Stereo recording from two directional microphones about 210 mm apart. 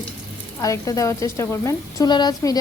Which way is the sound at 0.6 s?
15° left (ahead or behind).